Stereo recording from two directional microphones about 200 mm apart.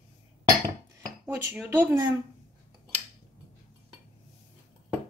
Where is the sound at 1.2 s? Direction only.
10° right (ahead or behind).